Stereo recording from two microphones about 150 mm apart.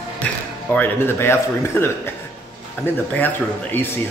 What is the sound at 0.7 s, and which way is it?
Speech, 15° left (ahead or behind).